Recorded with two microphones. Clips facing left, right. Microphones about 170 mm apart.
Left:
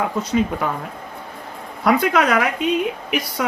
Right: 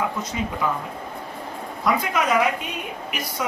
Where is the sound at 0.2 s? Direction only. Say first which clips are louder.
Left 6 dB; 65° left (ahead or behind).